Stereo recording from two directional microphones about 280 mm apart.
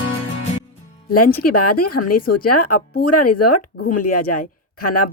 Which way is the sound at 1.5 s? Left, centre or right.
Left.